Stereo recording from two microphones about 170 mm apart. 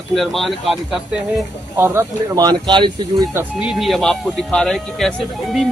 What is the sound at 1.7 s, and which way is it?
Speech, 15° right (ahead or behind).